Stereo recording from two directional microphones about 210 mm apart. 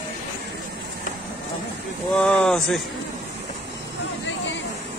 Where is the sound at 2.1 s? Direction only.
5° left (ahead or behind).